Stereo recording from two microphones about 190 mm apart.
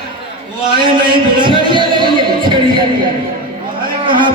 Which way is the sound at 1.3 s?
25° right (ahead or behind).